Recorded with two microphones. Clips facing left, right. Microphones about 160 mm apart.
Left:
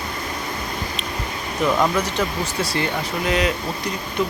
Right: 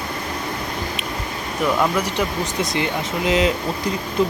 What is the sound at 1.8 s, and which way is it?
Speech, 10° right (ahead or behind).